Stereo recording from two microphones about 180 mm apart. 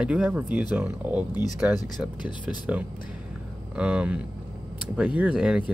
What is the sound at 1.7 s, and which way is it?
Speech, 25° left (ahead or behind).